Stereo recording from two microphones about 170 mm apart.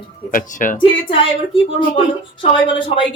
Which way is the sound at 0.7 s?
30° left (ahead or behind).